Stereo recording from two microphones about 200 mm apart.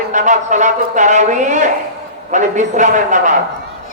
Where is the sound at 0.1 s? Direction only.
40° right (ahead or behind).